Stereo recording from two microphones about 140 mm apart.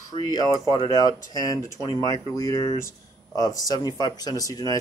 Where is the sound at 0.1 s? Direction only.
30° left (ahead or behind).